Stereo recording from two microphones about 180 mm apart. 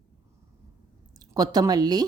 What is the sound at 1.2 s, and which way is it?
Speech, 20° right (ahead or behind).